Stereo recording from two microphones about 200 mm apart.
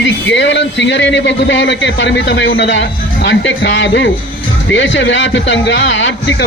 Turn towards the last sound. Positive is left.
turn(degrees=65)  # may be behind; listen again after turning